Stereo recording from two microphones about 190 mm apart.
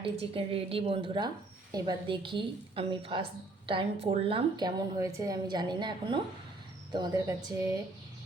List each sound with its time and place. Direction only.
0.0 s a woman's voice: 30° right (ahead or behind)